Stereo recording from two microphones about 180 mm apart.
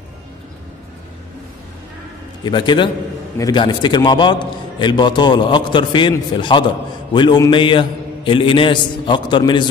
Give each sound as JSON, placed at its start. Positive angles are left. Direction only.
{"t": 2.4, "sound": "a man's voice", "side_deg": 25}